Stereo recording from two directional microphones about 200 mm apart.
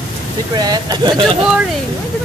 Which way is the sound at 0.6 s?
20° right (ahead or behind).